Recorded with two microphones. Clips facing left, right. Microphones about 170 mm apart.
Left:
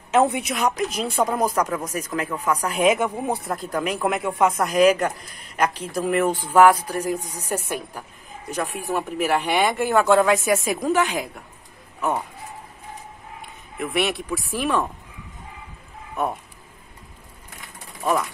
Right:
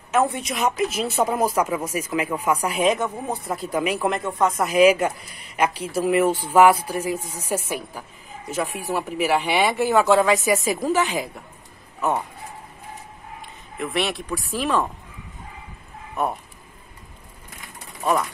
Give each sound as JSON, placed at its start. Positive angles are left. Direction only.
{"t": 0.1, "sound": "speech", "side_deg": 20}
{"t": 0.4, "sound": "speech", "side_deg": 0}
{"t": 2.9, "sound": "speech", "side_deg": 10}
{"t": 3.4, "sound": "speech", "side_deg": -5}
{"t": 4.2, "sound": "speech", "side_deg": 10}
{"t": 4.6, "sound": "speech", "side_deg": -5}
{"t": 13.7, "sound": "speech", "side_deg": 0}
{"t": 18.0, "sound": "speech", "side_deg": 0}